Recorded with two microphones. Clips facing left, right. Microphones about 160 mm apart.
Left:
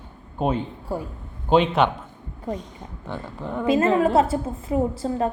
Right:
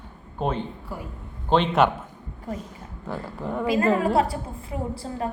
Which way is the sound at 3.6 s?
25° left (ahead or behind).